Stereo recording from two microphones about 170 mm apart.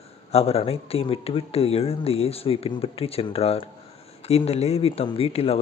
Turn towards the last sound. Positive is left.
turn(degrees=35)  # may be behind; listen again after turning